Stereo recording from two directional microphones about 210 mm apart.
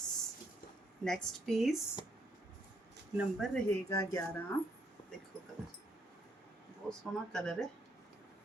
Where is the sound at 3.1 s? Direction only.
Centre (ahead or behind).